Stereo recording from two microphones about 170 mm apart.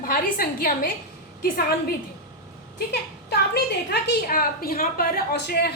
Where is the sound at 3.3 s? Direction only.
75° left (ahead or behind).